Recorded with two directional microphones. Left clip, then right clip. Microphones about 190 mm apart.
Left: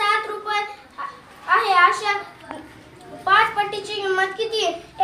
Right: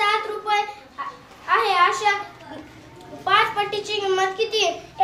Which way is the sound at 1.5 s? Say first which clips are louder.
Left 2 dB; 10° right (ahead or behind).